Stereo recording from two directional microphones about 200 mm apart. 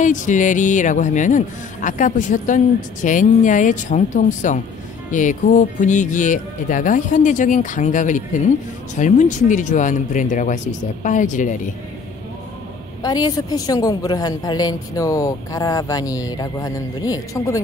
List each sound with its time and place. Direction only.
0.0 s a man's voice: 40° left (ahead or behind)
13.0 s a woman's voice: 20° left (ahead or behind)